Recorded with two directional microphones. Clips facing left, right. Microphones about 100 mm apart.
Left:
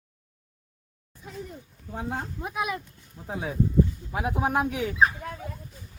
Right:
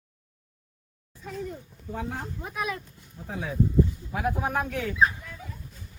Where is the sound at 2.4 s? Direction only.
15° left (ahead or behind).